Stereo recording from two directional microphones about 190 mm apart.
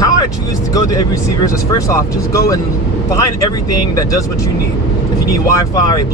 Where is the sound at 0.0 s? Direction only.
20° left (ahead or behind).